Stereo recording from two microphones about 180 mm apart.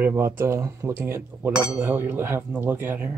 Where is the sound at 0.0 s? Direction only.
15° right (ahead or behind).